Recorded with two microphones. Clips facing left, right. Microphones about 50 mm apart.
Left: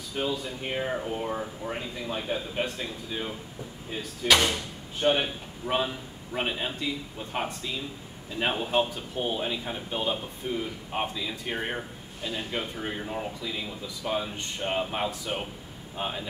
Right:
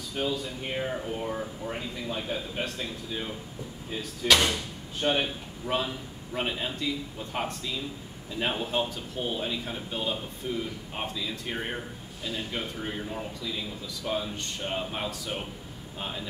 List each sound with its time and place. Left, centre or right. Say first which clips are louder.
0.2 s a man's voice: even; centre